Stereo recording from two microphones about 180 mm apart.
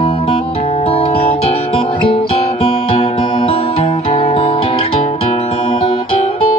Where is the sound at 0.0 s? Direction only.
35° left (ahead or behind).